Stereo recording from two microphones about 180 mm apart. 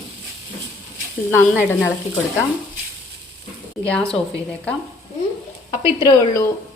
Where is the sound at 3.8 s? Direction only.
5° left (ahead or behind).